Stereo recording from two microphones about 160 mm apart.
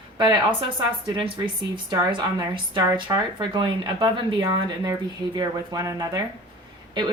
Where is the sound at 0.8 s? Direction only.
30° right (ahead or behind).